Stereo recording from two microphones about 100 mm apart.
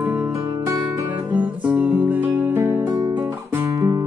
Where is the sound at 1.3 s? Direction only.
15° right (ahead or behind).